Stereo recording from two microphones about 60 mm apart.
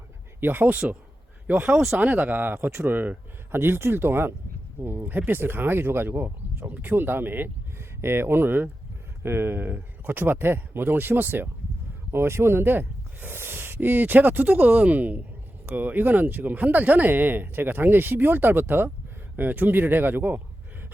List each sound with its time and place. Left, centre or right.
0.3 s speech: right